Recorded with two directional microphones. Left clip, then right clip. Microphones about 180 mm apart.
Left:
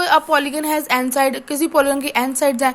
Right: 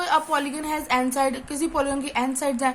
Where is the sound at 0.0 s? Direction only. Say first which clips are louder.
Left 7 dB; 50° left (ahead or behind).